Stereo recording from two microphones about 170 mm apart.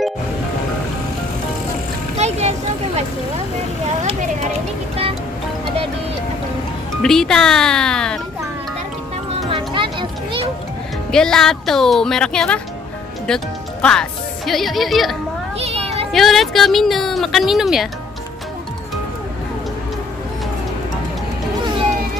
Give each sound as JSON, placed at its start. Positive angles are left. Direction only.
{"t": 2.1, "sound": "music", "side_deg": -40}
{"t": 4.0, "sound": "speech", "side_deg": -40}
{"t": 7.0, "sound": "speech", "side_deg": 5}
{"t": 9.5, "sound": "children playing", "side_deg": -30}
{"t": 11.1, "sound": "speech", "side_deg": 5}
{"t": 15.6, "sound": "a sound", "side_deg": -35}
{"t": 16.1, "sound": "speech", "side_deg": 0}